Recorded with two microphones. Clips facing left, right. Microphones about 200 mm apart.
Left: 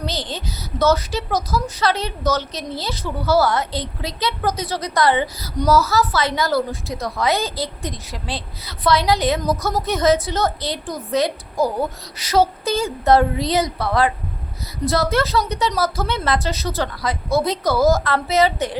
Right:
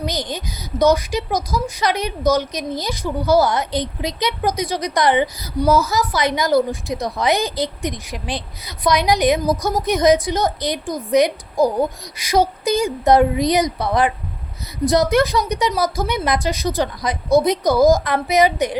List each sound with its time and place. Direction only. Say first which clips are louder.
0.0 s a woman's voice: right 2 dB; 15° right (ahead or behind)